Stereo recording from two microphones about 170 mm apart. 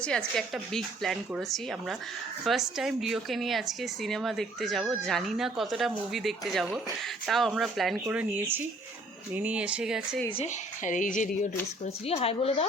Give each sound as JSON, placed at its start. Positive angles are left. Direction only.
{"t": 0.0, "sound": "a woman's voice", "side_deg": 5}
{"t": 10.3, "sound": "a woman's voice", "side_deg": 45}
{"t": 12.0, "sound": "a woman's voice", "side_deg": 35}